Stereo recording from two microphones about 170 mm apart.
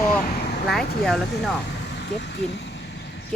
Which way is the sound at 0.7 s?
Centre (ahead or behind).